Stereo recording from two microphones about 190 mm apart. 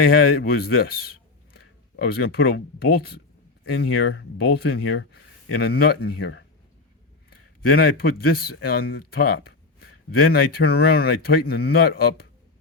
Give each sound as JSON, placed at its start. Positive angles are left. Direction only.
{"t": 0.0, "sound": "speech", "side_deg": 50}
{"t": 6.1, "sound": "speech", "side_deg": 75}
{"t": 7.3, "sound": "a man's voice", "side_deg": 50}